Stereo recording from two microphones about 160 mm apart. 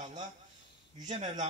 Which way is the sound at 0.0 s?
50° right (ahead or behind).